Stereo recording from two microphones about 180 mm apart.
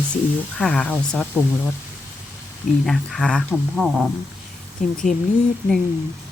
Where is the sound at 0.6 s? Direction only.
5° left (ahead or behind).